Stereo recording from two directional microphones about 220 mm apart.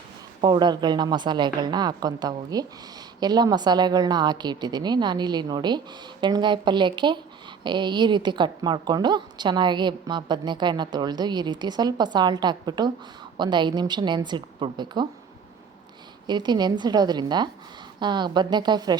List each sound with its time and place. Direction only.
0.4 s a woman's voice: 20° right (ahead or behind)
16.2 s a woman's voice: 20° right (ahead or behind)